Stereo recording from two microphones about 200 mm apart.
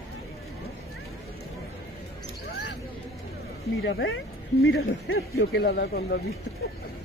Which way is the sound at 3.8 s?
65° left (ahead or behind).